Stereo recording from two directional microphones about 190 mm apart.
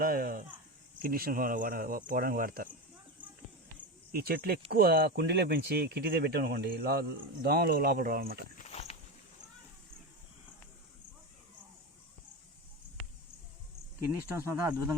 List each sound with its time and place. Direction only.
0.0 s speech: 50° right (ahead or behind)
4.1 s speech: 50° right (ahead or behind)
8.5 s walk: 35° left (ahead or behind)
14.2 s speech: 10° right (ahead or behind)